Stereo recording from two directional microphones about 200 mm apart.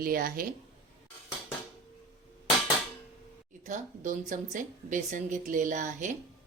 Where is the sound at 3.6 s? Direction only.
40° right (ahead or behind).